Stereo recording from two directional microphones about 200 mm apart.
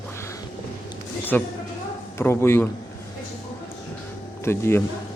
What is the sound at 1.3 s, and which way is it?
Speech, 10° left (ahead or behind).